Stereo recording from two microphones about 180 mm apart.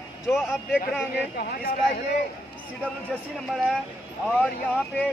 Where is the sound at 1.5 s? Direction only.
55° left (ahead or behind).